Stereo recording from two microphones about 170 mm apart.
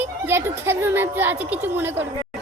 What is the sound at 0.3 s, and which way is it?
A child's voice, 15° right (ahead or behind).